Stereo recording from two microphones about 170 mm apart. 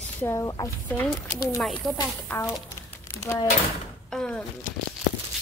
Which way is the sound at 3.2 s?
20° left (ahead or behind).